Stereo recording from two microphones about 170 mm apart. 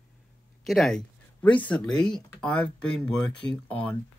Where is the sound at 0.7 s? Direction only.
5° left (ahead or behind).